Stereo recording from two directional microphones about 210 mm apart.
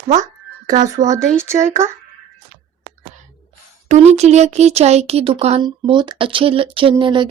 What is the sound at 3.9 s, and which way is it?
Speech, 30° right (ahead or behind).